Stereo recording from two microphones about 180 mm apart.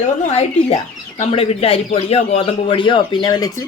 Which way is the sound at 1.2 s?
35° left (ahead or behind).